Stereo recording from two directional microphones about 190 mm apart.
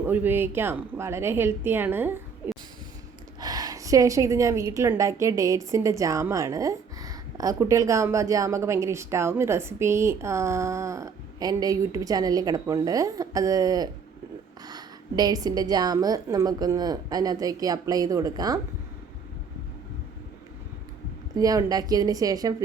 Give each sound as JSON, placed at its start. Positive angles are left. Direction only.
{"t": 0.0, "sound": "a woman's voice", "side_deg": -10}
{"t": 2.4, "sound": "a sound", "side_deg": -10}
{"t": 3.4, "sound": "a woman's voice", "side_deg": -20}
{"t": 21.3, "sound": "a woman's voice", "side_deg": -20}